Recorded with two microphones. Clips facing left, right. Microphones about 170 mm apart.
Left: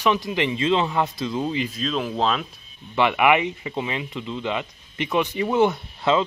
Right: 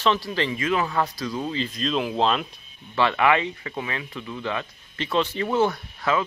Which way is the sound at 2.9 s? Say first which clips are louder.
Left 2 dB; 15° left (ahead or behind).